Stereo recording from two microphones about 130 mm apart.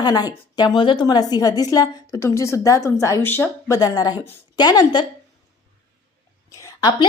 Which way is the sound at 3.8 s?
30° left (ahead or behind).